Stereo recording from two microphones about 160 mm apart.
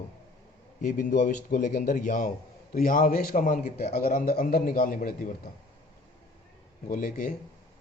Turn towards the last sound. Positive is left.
turn(degrees=55)  # may be behind; listen again after turning